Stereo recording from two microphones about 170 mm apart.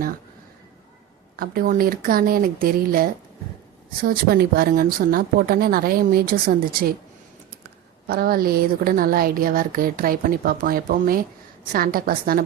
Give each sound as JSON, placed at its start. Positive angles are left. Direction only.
{"t": 1.4, "sound": "a woman's voice", "side_deg": -60}
{"t": 8.0, "sound": "a woman's voice", "side_deg": -60}